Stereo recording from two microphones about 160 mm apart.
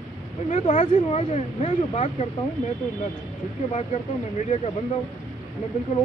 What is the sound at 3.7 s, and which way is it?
Speech, 45° left (ahead or behind).